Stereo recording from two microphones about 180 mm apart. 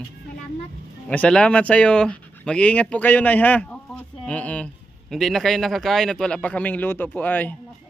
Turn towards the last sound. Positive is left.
turn(degrees=10)  # may be behind; listen again after turning